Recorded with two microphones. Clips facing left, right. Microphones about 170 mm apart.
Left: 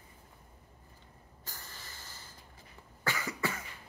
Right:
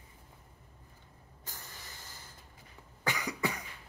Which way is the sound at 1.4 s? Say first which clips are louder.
Even; 20° right (ahead or behind).